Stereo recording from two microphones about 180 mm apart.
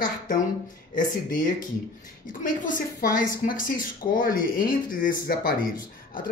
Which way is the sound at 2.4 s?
50° left (ahead or behind).